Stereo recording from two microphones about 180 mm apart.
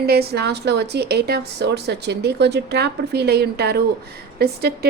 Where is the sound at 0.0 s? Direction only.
60° right (ahead or behind).